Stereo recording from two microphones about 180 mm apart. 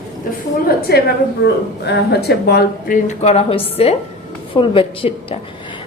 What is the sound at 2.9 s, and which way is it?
A woman's voice, 40° left (ahead or behind).